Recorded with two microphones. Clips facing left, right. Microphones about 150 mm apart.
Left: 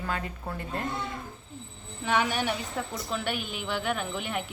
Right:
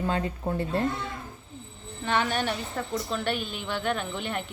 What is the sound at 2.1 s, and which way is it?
A woman's voice, 10° left (ahead or behind).